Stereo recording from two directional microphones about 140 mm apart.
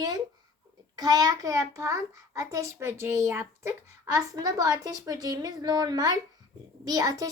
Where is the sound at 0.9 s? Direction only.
30° right (ahead or behind).